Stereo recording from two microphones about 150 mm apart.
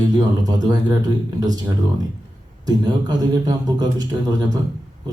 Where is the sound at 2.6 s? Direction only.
30° right (ahead or behind).